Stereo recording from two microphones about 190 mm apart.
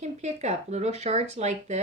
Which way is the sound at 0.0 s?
35° right (ahead or behind).